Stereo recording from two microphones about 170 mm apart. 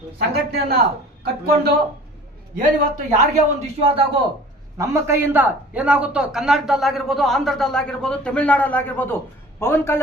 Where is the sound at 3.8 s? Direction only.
30° right (ahead or behind).